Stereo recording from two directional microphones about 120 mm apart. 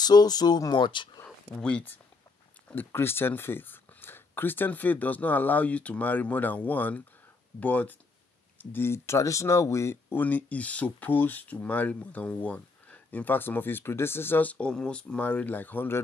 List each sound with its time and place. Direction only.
0.0 s speech: 35° left (ahead or behind)
1.2 s speech: 10° left (ahead or behind)